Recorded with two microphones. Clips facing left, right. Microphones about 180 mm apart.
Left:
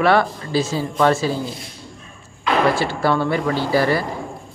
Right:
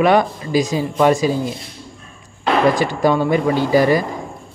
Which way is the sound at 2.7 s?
15° right (ahead or behind).